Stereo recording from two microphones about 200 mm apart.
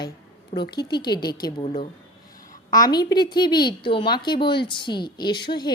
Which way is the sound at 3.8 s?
25° left (ahead or behind).